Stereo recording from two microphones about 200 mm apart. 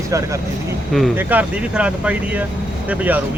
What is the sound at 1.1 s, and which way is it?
Speech, 5° right (ahead or behind).